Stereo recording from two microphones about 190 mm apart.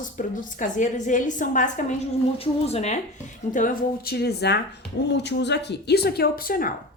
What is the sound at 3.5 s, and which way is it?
A woman's voice, 50° left (ahead or behind).